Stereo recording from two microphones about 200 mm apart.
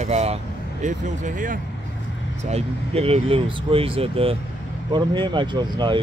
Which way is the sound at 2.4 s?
30° right (ahead or behind).